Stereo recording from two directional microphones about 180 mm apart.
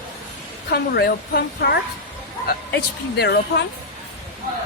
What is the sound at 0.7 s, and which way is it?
A woman's voice, 60° left (ahead or behind).